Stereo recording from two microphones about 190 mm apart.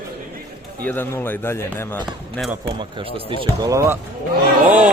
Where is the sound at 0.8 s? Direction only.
10° left (ahead or behind).